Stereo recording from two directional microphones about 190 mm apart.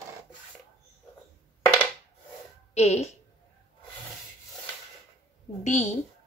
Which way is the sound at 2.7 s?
35° left (ahead or behind).